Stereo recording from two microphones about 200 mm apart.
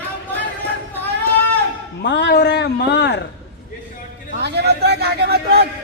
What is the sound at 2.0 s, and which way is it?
Speech, 60° left (ahead or behind).